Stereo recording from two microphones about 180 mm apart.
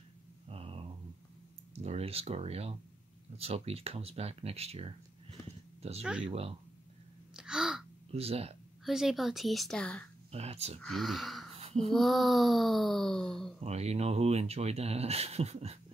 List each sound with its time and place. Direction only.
0.5 s a sound: 35° right (ahead or behind)
1.8 s speech: 35° right (ahead or behind)
7.3 s gasp: 5° right (ahead or behind)
8.1 s speech: 35° right (ahead or behind)
8.8 s speech: centre (ahead or behind)
10.3 s speech: 35° right (ahead or behind)
10.8 s speech: centre (ahead or behind)
13.7 s speech: 35° right (ahead or behind)